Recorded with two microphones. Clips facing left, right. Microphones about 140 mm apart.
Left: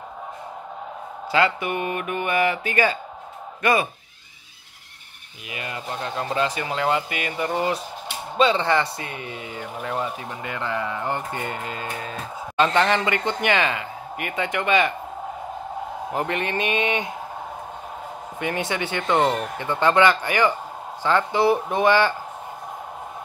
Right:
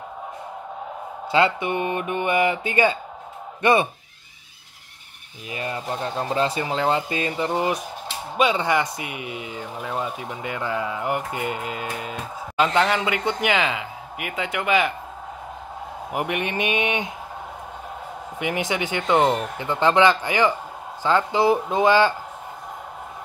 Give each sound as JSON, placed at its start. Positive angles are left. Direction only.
{"t": 1.3, "sound": "speech", "side_deg": -25}
{"t": 5.5, "sound": "speech", "side_deg": -35}
{"t": 9.8, "sound": "speech", "side_deg": -5}
{"t": 16.1, "sound": "speech", "side_deg": -15}
{"t": 18.4, "sound": "speech", "side_deg": -15}